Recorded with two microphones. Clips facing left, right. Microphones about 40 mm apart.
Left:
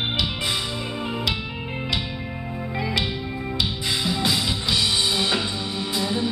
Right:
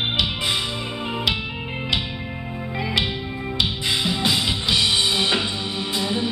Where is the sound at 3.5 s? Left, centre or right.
Right.